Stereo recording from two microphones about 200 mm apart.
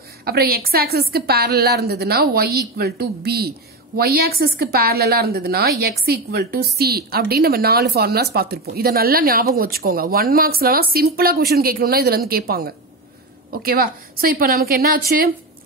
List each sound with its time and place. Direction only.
0.2 s a woman's voice: 50° right (ahead or behind)